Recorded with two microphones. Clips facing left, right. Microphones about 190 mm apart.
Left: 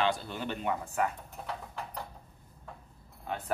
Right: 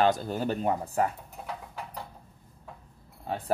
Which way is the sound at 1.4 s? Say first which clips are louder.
Right 1 dB; 5° right (ahead or behind).